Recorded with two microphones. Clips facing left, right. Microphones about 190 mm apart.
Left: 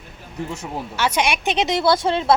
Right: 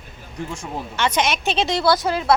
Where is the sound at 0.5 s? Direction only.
5° left (ahead or behind); by 2.3 s 25° left (ahead or behind).